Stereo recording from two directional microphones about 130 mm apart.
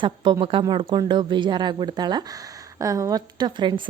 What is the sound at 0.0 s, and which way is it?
Speech, 40° right (ahead or behind).